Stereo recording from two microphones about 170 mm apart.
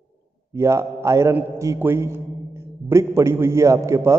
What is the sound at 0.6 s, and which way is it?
A man's voice, 15° right (ahead or behind).